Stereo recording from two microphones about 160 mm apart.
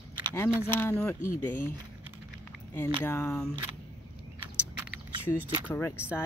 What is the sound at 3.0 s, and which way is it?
Speech, 15° left (ahead or behind).